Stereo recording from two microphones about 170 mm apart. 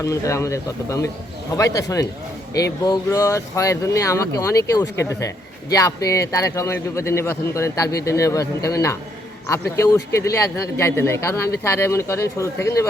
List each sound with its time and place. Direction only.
0.0 s a man's voice: 20° left (ahead or behind)